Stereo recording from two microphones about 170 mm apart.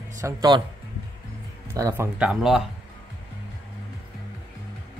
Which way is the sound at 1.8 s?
20° right (ahead or behind).